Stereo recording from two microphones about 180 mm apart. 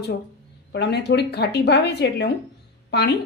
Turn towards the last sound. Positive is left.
turn(degrees=70)  # may be behind; listen again after turning